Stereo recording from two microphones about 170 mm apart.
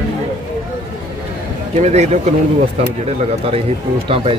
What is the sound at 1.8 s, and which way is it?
Speech, 40° right (ahead or behind).